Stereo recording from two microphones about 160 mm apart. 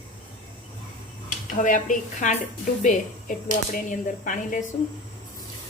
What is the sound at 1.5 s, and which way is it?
Speech, 55° left (ahead or behind).